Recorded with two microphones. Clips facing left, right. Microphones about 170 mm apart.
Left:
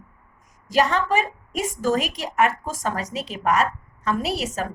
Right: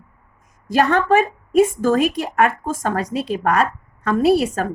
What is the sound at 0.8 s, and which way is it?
A woman's voice, 55° right (ahead or behind).